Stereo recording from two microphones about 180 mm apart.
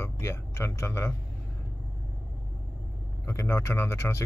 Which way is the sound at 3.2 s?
15° left (ahead or behind).